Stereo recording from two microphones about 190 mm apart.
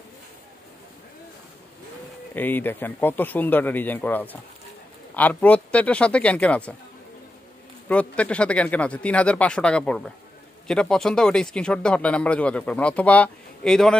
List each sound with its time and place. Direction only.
2.3 s speech: 10° left (ahead or behind)
7.9 s speech: 5° left (ahead or behind)